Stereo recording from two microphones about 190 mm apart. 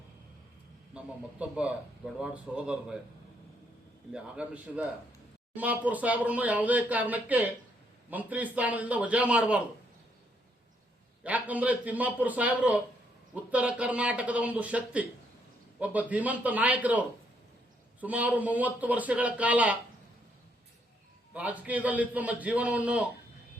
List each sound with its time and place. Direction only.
0.9 s a man's voice: 5° right (ahead or behind)
4.1 s a man's voice: 5° right (ahead or behind)
11.2 s speech: 10° right (ahead or behind)
21.3 s speech: 10° right (ahead or behind)